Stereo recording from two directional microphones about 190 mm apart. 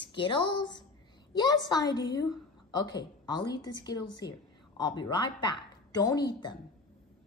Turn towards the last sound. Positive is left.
turn(degrees=20)  # may be behind; listen again after turning